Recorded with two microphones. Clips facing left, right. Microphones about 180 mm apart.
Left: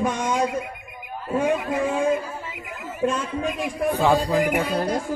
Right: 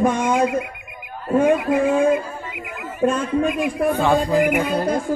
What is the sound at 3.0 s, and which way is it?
A man's voice, 50° right (ahead or behind).